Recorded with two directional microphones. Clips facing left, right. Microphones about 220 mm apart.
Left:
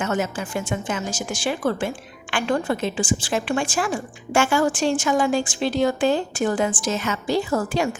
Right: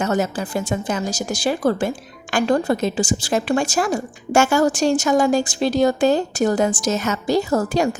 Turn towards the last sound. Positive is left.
turn(degrees=-40)  # may be behind; listen again after turning